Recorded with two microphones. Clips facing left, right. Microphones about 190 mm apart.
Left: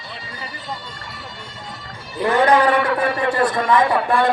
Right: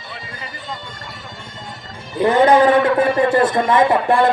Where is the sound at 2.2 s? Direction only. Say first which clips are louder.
Right 3 dB; 20° right (ahead or behind).